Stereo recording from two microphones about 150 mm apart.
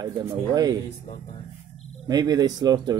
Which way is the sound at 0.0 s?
25° right (ahead or behind).